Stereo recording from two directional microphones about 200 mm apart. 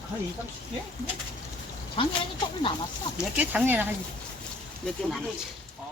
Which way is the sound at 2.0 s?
25° left (ahead or behind).